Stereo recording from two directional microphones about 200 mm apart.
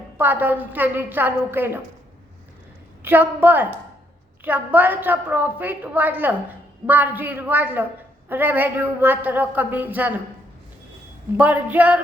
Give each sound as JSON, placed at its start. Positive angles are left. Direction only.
{"t": 0.2, "sound": "a woman's voice", "side_deg": -10}
{"t": 3.0, "sound": "a woman's voice", "side_deg": -10}
{"t": 11.3, "sound": "a woman's voice", "side_deg": -10}